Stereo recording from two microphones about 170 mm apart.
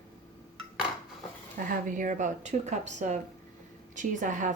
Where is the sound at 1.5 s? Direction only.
50° right (ahead or behind).